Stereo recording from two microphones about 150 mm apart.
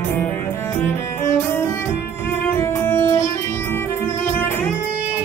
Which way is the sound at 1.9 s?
15° left (ahead or behind).